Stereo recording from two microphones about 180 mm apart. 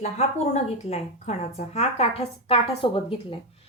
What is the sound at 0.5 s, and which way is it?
A woman's voice, 40° left (ahead or behind).